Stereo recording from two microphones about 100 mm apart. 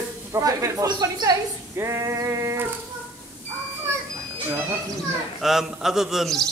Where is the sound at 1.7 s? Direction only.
30° right (ahead or behind).